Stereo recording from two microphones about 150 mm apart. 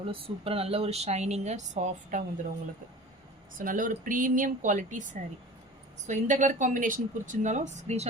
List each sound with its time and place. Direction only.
0.0 s speech: 40° right (ahead or behind); by 2.5 s 55° right (ahead or behind)
3.6 s speech: 65° right (ahead or behind)
6.1 s speech: 55° right (ahead or behind)